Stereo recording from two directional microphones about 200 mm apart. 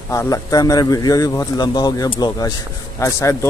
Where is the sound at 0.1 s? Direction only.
15° left (ahead or behind).